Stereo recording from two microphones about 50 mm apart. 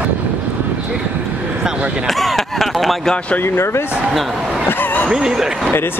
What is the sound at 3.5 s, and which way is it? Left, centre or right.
Speech, left.